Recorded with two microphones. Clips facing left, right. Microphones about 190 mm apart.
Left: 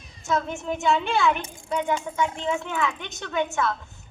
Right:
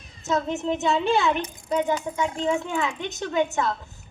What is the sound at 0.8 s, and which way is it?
Speech, 35° right (ahead or behind).